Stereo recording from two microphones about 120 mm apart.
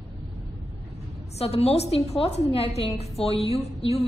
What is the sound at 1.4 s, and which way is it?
A woman's voice, 60° left (ahead or behind).